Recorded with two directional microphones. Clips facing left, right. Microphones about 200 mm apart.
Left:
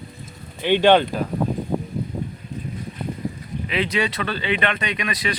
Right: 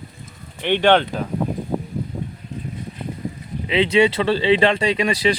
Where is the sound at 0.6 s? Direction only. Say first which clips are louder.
Left 1 dB; 10° left (ahead or behind).